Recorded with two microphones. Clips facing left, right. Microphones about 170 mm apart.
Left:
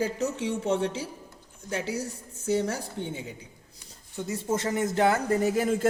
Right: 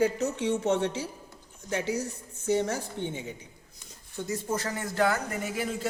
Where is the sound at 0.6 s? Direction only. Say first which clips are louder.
Even; 30° left (ahead or behind).